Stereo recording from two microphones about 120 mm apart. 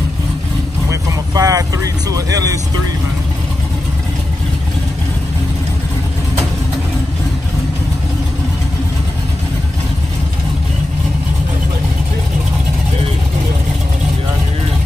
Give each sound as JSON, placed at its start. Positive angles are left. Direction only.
{"t": 0.8, "sound": "vehicle", "side_deg": -30}